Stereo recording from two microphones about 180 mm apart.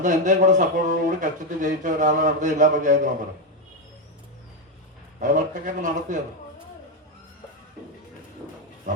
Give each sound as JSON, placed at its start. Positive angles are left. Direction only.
{"t": 0.0, "sound": "speech", "side_deg": -45}
{"t": 5.2, "sound": "speech", "side_deg": -45}